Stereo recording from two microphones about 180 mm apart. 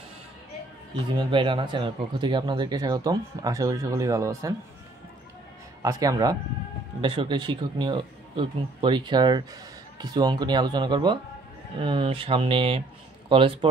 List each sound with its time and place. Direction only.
1.1 s speech: 25° right (ahead or behind)
5.8 s speech: 20° right (ahead or behind)